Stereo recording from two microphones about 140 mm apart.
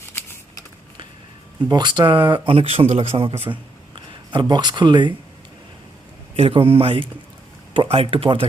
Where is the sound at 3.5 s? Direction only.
35° right (ahead or behind).